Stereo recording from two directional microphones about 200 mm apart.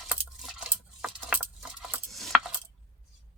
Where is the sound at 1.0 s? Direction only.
5° right (ahead or behind).